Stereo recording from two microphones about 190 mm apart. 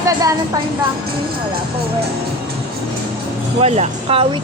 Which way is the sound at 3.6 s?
35° right (ahead or behind).